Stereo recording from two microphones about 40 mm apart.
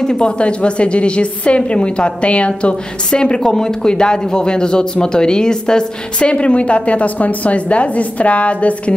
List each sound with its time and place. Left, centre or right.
0.0 s speech: centre
0.4 s speech: left
3.1 s speech: left